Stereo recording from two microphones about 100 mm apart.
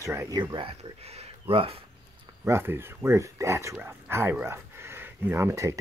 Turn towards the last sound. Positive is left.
turn(degrees=-30)  # may be behind; listen again after turning